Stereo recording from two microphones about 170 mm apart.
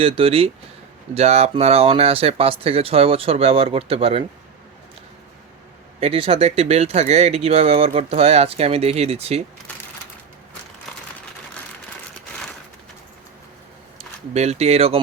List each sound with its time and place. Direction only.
0.0 s speech: 35° right (ahead or behind)
6.0 s speech: 35° right (ahead or behind)
14.3 s speech: 40° right (ahead or behind)